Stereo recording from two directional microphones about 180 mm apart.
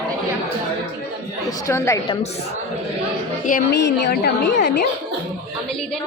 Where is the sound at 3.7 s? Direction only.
70° left (ahead or behind).